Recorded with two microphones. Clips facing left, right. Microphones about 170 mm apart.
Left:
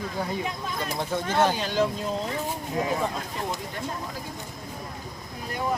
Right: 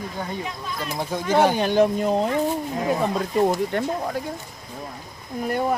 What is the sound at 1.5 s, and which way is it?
Speech, 55° right (ahead or behind).